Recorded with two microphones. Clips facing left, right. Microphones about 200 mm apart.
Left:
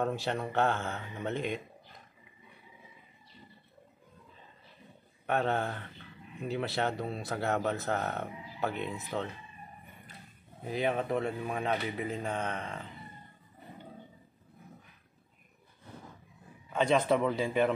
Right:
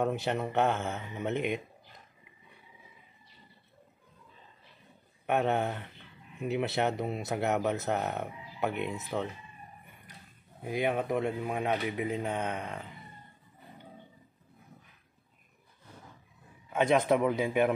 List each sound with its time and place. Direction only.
0.0 s speech: 15° right (ahead or behind)
5.2 s speech: 15° right (ahead or behind)
10.6 s speech: 10° right (ahead or behind)
16.7 s speech: 15° right (ahead or behind)